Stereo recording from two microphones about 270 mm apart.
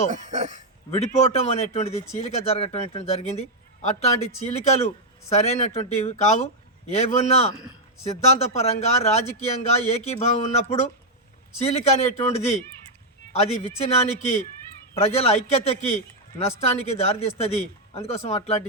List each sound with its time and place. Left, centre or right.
0.1 s speech: right
0.9 s a man's voice: left
13.6 s a man's voice: left